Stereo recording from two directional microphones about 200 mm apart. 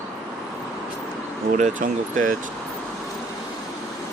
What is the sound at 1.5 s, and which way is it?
Speech, 35° right (ahead or behind).